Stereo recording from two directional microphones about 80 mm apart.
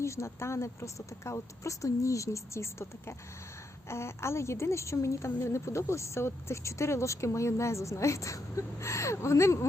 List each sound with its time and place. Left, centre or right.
0.0 s a woman's voice: left